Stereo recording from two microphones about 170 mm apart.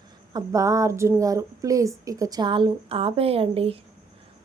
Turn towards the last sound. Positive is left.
turn(degrees=-35)  # may be behind; listen again after turning